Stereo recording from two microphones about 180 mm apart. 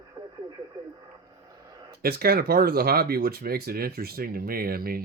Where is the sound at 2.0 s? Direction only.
55° right (ahead or behind).